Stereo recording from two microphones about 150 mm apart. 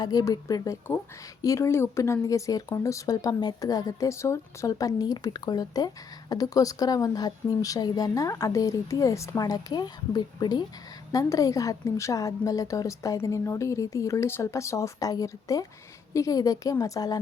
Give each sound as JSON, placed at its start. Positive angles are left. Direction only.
{"t": 0.0, "sound": "speech", "side_deg": 25}